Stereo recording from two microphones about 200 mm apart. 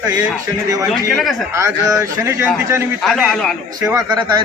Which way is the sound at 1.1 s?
Centre (ahead or behind).